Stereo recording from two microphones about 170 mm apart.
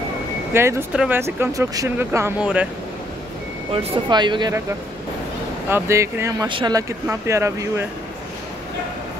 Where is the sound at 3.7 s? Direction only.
30° right (ahead or behind).